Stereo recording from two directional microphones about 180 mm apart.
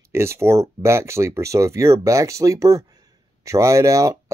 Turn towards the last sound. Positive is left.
turn(degrees=-20)  # may be behind; listen again after turning